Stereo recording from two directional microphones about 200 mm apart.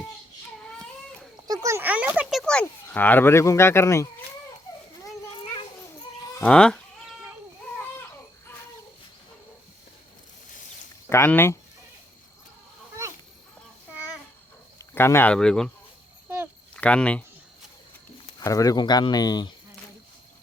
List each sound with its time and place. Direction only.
1.5 s a sound: 15° right (ahead or behind); by 4.1 s 15° left (ahead or behind)
6.4 s speech: 5° left (ahead or behind)
11.1 s speech: 10° left (ahead or behind)
14.8 s speech: 10° left (ahead or behind)
16.7 s speech: 5° left (ahead or behind)
18.3 s speech: 15° left (ahead or behind)